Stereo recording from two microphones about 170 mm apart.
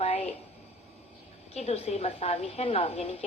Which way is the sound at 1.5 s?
40° left (ahead or behind).